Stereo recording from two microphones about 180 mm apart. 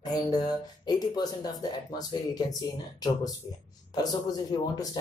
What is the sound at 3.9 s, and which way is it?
Speech, 20° left (ahead or behind).